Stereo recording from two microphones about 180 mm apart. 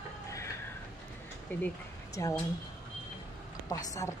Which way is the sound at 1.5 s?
10° left (ahead or behind).